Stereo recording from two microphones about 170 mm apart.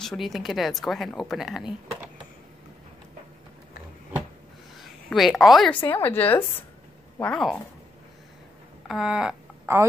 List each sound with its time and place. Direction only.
0.0 s speech: centre (ahead or behind)
4.7 s a woman's voice: centre (ahead or behind)
5.8 s a woman's voice: 10° left (ahead or behind)
8.8 s speech: 5° right (ahead or behind)